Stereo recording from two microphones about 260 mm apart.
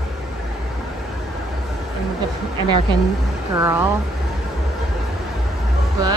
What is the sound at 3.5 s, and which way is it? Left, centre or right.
Speech, centre.